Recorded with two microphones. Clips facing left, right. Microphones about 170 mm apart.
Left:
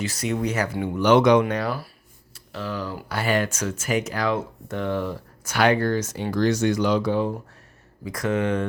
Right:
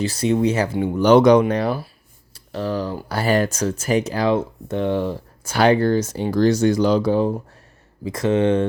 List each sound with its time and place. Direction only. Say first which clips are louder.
0.0 s speech: right 7 dB; 30° right (ahead or behind)
2.3 s speech: right 7 dB; 40° right (ahead or behind)